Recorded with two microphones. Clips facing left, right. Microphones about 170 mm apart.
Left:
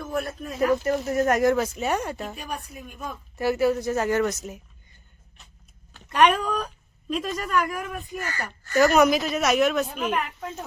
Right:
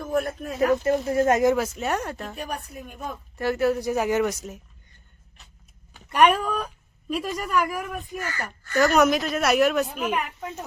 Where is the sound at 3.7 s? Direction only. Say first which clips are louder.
Even; 15° right (ahead or behind).